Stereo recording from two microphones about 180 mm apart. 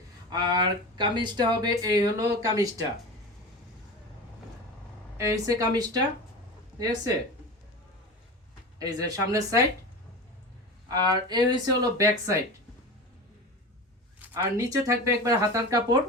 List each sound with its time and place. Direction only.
0.3 s speech: 25° right (ahead or behind)
5.1 s speech: 15° right (ahead or behind)
8.8 s speech: 20° right (ahead or behind)
10.8 s speech: 20° right (ahead or behind)
14.2 s speech: 15° right (ahead or behind)